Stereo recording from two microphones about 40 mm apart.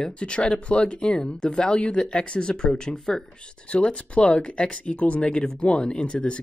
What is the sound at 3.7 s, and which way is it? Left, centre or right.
Speech, left.